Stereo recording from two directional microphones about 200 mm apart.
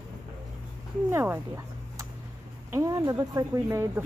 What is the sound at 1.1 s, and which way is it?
Speech, 10° right (ahead or behind).